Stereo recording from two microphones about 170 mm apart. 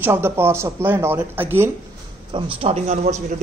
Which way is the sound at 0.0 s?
15° right (ahead or behind).